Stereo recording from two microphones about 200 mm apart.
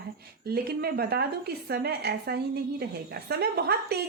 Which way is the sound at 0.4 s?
50° right (ahead or behind).